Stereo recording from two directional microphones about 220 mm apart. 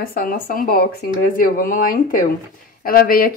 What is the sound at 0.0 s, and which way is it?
Speech, 40° left (ahead or behind).